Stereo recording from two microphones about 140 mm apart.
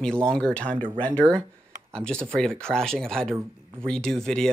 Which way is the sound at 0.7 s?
40° right (ahead or behind).